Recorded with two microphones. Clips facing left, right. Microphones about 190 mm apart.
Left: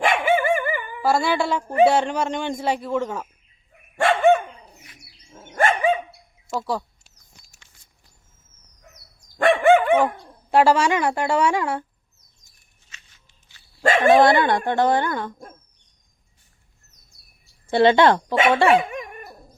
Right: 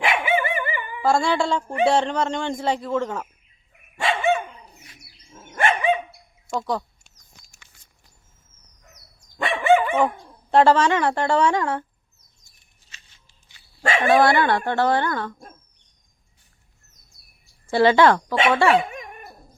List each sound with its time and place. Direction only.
0.0 s dog: 45° left (ahead or behind)
1.0 s a woman's voice: 5° left (ahead or behind)
3.9 s dog: 55° left (ahead or behind)
5.3 s dog: 35° left (ahead or behind)
6.5 s a sound: 10° left (ahead or behind)
9.4 s dog: 50° left (ahead or behind)
10.5 s a woman's voice: 10° left (ahead or behind)
13.8 s speech: 45° left (ahead or behind)
14.2 s a woman's voice: 20° left (ahead or behind)
17.7 s speech: 20° left (ahead or behind)